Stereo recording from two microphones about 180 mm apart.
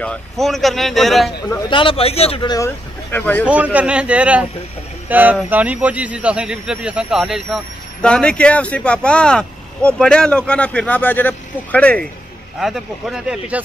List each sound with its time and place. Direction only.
0.0 s speech: 5° left (ahead or behind)
1.7 s speech: 30° left (ahead or behind); by 3.4 s 10° left (ahead or behind)
3.4 s a man's voice: 5° right (ahead or behind)